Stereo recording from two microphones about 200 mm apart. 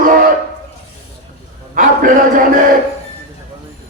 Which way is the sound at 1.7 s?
40° right (ahead or behind).